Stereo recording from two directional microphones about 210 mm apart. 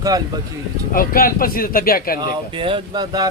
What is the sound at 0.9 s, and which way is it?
Speech, 45° left (ahead or behind).